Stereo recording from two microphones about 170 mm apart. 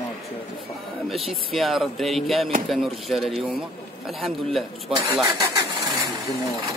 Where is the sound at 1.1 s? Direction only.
Centre (ahead or behind).